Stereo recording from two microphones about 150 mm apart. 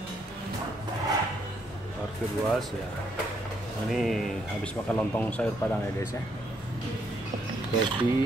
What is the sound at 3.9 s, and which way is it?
Speech, centre (ahead or behind).